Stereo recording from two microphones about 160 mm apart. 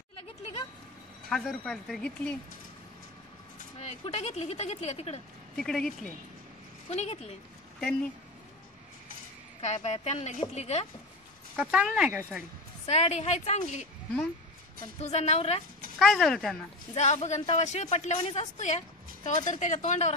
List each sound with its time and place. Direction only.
1.3 s speech: centre (ahead or behind)
3.7 s speech: 40° left (ahead or behind)
5.6 s speech: 5° left (ahead or behind)
6.9 s speech: 40° left (ahead or behind)
9.6 s speech: 45° left (ahead or behind)
11.5 s speech: 10° right (ahead or behind)
12.8 s speech: 40° left (ahead or behind)
15.0 s speech: 40° left (ahead or behind)
16.0 s speech: 5° left (ahead or behind)
16.9 s speech: 45° left (ahead or behind)